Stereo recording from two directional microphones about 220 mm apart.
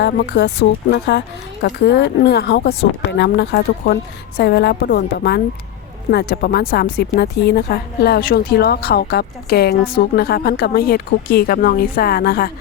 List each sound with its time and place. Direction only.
0.0 s a woman's voice: 50° left (ahead or behind)